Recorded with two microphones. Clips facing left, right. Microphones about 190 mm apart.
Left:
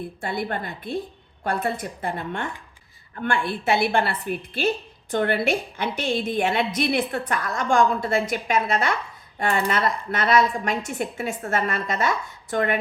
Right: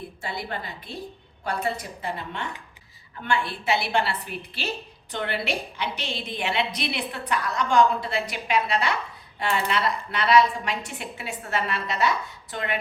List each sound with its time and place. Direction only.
0.2 s a woman's voice: 50° left (ahead or behind)